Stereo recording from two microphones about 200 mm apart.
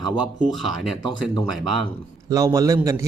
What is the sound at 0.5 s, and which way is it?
Speech, centre (ahead or behind).